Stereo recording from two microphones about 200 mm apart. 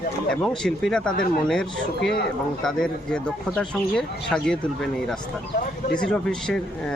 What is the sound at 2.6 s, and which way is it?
Speech, 5° left (ahead or behind).